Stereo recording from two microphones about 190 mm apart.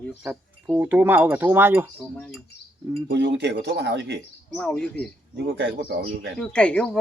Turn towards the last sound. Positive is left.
turn(degrees=5)  # may be behind; listen again after turning